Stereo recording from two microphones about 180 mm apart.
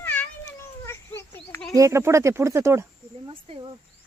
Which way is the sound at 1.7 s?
15° right (ahead or behind).